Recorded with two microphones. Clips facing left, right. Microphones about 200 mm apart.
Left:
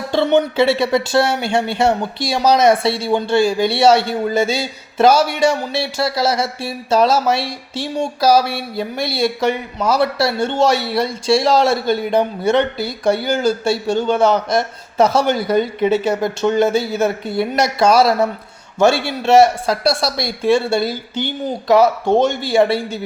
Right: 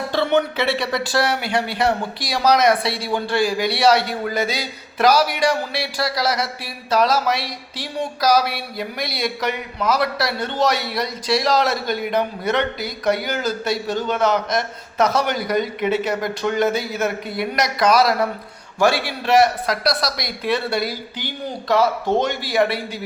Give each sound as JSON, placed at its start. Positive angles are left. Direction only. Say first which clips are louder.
{"t": 0.1, "sound": "speech", "louder": "left 5 dB", "side_deg": 25}